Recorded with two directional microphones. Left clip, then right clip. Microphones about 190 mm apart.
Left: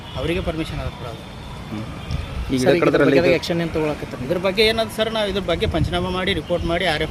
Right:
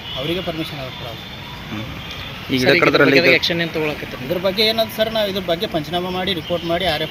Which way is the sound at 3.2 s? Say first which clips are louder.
Right 4 dB; 55° left (ahead or behind).